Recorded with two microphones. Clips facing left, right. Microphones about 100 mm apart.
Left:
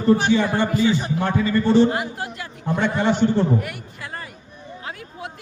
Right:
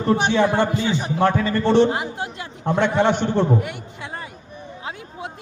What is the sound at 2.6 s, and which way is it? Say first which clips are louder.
Speech: right 2 dB; 70° right (ahead or behind).